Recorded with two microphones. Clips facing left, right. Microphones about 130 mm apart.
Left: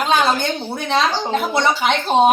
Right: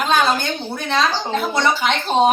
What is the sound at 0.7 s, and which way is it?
Speech, 10° left (ahead or behind).